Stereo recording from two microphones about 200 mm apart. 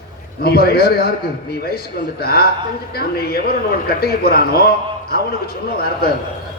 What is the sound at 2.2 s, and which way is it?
Speech, 50° left (ahead or behind).